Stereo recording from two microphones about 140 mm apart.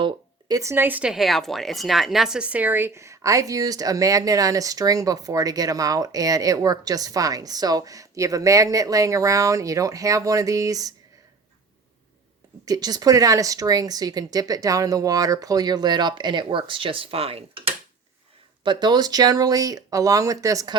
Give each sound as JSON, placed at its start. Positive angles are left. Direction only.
{"t": 0.0, "sound": "speech", "side_deg": -25}
{"t": 12.6, "sound": "speech", "side_deg": -25}